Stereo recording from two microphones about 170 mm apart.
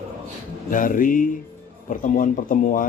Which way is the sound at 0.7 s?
50° left (ahead or behind).